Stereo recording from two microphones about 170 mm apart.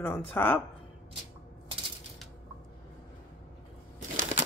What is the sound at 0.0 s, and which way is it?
Speech, 10° left (ahead or behind).